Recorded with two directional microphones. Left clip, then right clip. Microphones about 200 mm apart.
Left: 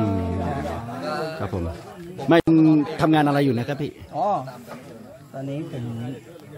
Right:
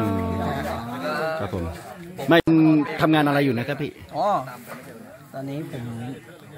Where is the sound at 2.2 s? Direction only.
Centre (ahead or behind).